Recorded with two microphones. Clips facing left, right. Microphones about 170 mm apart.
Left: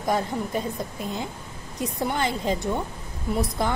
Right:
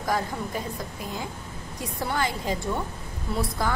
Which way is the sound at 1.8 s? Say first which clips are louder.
Left 2 dB; 20° left (ahead or behind).